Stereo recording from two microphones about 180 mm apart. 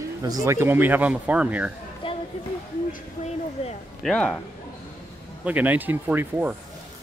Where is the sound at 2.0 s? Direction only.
30° left (ahead or behind).